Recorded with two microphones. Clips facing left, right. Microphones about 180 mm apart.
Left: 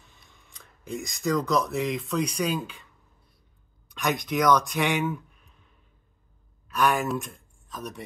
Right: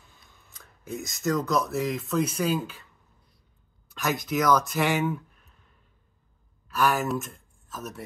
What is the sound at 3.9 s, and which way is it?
Speech, 5° right (ahead or behind).